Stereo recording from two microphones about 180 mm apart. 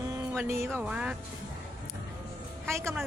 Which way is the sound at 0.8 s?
5° right (ahead or behind).